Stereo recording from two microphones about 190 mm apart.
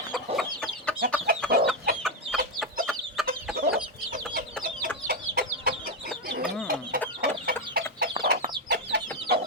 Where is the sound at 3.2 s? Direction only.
Centre (ahead or behind).